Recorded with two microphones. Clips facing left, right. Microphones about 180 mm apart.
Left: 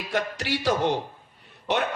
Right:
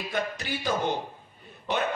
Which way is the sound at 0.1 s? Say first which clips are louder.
Left 5 dB; 80° left.